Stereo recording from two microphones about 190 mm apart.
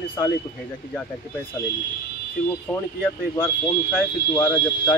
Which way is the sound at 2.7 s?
10° left (ahead or behind).